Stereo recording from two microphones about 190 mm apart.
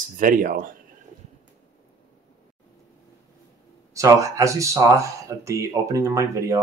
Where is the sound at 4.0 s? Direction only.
15° right (ahead or behind).